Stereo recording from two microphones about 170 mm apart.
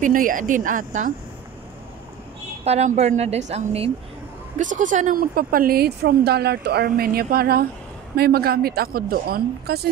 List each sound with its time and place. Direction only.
0.0 s a woman's voice: 50° right (ahead or behind)
2.6 s a woman's voice: 40° right (ahead or behind); by 9.8 s 65° right (ahead or behind)